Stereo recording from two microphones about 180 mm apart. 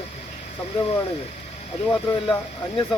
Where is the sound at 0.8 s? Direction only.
35° left (ahead or behind).